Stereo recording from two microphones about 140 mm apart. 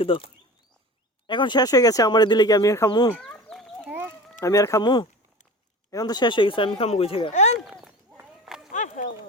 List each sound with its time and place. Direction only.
0.0 s speech: 40° left (ahead or behind)
1.3 s speech: 35° left (ahead or behind)
3.1 s chicken: 10° left (ahead or behind)
3.8 s a sound: 15° right (ahead or behind)
4.4 s speech: 25° left (ahead or behind); by 7.3 s 40° left (ahead or behind)
7.6 s clip-clop: 5° right (ahead or behind)
8.7 s a sound: 60° left (ahead or behind)